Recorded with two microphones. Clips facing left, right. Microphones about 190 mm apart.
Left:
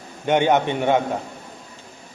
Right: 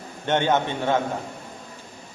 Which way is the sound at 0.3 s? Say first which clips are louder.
Left 4 dB; 15° left (ahead or behind).